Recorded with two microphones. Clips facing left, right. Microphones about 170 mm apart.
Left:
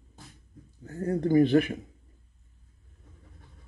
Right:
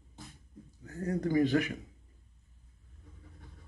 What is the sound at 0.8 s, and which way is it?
Speech, 30° left (ahead or behind).